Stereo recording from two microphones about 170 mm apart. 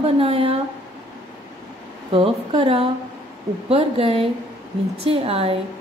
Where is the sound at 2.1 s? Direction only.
35° right (ahead or behind).